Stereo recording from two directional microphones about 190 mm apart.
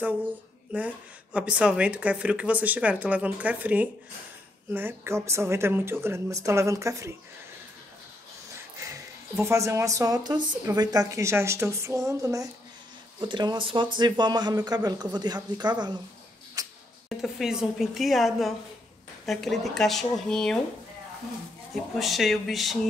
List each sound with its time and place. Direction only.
0.7 s speech: 5° right (ahead or behind)
8.8 s speech: 15° right (ahead or behind)
16.6 s a sound: 20° right (ahead or behind)
17.2 s a woman's voice: 5° right (ahead or behind)
21.9 s a woman's voice: centre (ahead or behind)